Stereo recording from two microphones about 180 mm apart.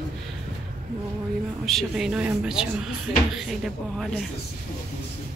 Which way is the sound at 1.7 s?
Centre (ahead or behind).